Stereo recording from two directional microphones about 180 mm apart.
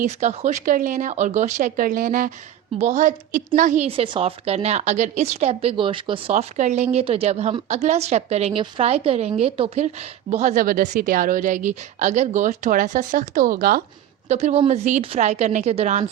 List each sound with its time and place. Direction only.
0.0 s a woman's voice: 40° right (ahead or behind)
6.3 s a woman's voice: 40° right (ahead or behind)
14.3 s a woman's voice: 40° right (ahead or behind)